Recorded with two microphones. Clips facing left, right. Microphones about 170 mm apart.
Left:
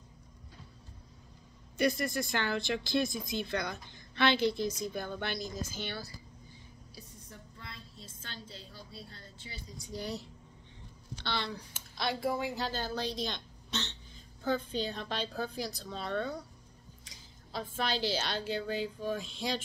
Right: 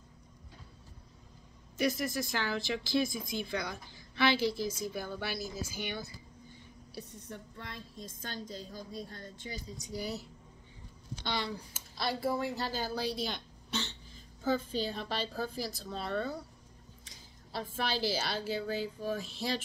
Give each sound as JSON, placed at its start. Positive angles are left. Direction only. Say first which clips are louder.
{"t": 1.8, "sound": "speech", "louder": "left 1 dB", "side_deg": -5}
{"t": 7.0, "sound": "a sound", "louder": "right 8 dB", "side_deg": -65}
{"t": 8.0, "sound": "a woman's voice", "louder": "right 7 dB", "side_deg": -45}
{"t": 9.8, "sound": "a woman's voice", "louder": "even", "side_deg": -5}
{"t": 11.2, "sound": "a woman's voice", "louder": "right 1 dB", "side_deg": -10}